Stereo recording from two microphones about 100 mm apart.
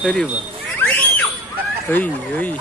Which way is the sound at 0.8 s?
15° left (ahead or behind).